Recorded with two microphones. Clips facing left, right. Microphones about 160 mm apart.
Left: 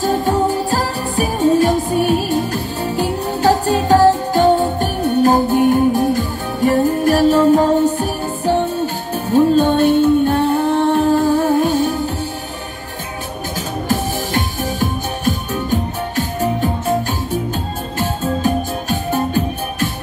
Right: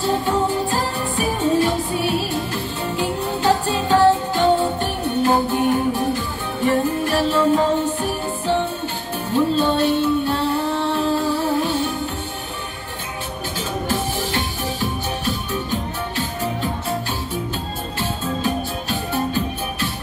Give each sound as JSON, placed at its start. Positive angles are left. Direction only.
{"t": 0.0, "sound": "music", "side_deg": 45}
{"t": 13.8, "sound": "music", "side_deg": 45}